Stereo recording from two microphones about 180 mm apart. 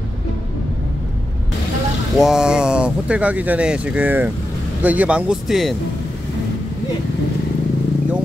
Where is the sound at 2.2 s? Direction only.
5° right (ahead or behind).